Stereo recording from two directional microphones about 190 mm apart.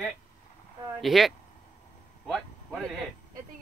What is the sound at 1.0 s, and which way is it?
Speech, centre (ahead or behind).